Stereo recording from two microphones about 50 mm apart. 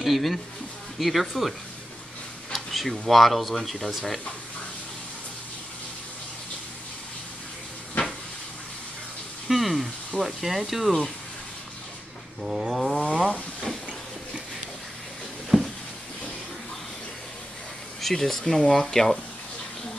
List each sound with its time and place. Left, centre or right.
0.0 s speech: centre
2.5 s speech: centre
9.5 s speech: centre
12.4 s speech: centre
13.3 s speech: centre
15.5 s a sound: centre
18.0 s speech: centre